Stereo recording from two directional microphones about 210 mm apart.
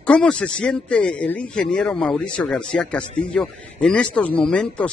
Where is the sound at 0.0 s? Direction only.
5° left (ahead or behind).